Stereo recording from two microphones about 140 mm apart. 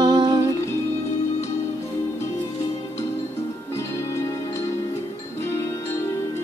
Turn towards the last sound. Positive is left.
turn(degrees=20)  # may be behind; listen again after turning